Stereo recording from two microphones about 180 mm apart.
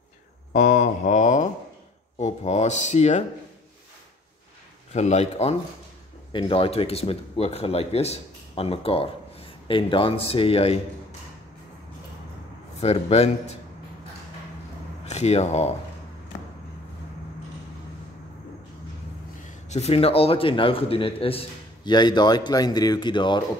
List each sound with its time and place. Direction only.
0.5 s speech: 45° left (ahead or behind)
4.9 s speech: 40° left (ahead or behind)
12.7 s speech: 35° left (ahead or behind)
15.0 s speech: 35° left (ahead or behind)
19.4 s a man's voice: 40° left (ahead or behind)